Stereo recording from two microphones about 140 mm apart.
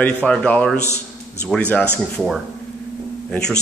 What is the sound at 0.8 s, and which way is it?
Speech, 20° right (ahead or behind).